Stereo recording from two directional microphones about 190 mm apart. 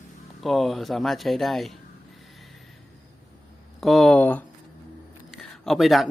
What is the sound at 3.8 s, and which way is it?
Speech, centre (ahead or behind).